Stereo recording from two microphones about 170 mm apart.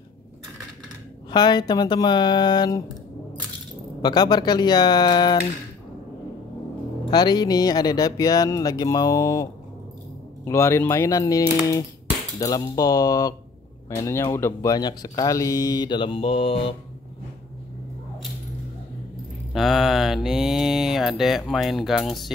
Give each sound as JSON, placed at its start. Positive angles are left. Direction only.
{"t": 1.3, "sound": "speech", "side_deg": 25}
{"t": 4.0, "sound": "speech", "side_deg": 25}
{"t": 7.1, "sound": "speech", "side_deg": 25}
{"t": 19.5, "sound": "speech", "side_deg": 0}